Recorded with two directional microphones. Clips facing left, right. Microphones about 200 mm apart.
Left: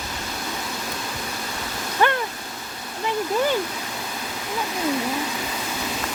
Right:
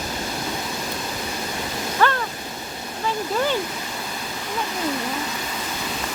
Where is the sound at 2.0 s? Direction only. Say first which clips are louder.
Even; 15° left (ahead or behind).